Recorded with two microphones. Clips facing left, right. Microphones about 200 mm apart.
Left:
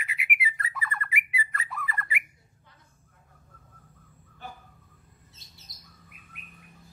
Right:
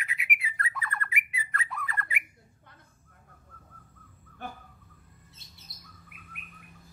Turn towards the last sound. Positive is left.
turn(degrees=-60)  # may be behind; listen again after turning